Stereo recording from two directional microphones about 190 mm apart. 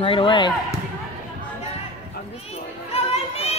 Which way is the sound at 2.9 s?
35° left (ahead or behind).